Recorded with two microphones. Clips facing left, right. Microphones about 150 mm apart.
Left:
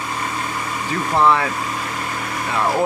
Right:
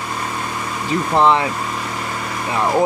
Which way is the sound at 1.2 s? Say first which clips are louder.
Right 1 dB; 20° right (ahead or behind).